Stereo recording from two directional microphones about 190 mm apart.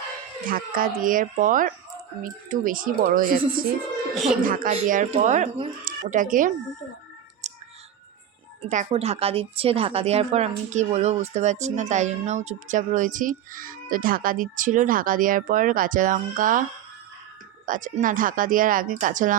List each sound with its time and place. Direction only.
0.5 s speech: 50° right (ahead or behind)
4.1 s a woman's voice: centre (ahead or behind)
4.4 s speech: 45° right (ahead or behind)
8.7 s a woman's voice: 35° right (ahead or behind)
17.7 s speech: 40° right (ahead or behind)